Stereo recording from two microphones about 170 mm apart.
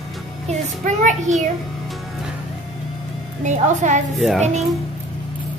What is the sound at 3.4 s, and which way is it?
Speech, 45° right (ahead or behind).